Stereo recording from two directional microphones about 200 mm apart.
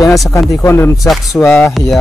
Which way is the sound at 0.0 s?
15° left (ahead or behind).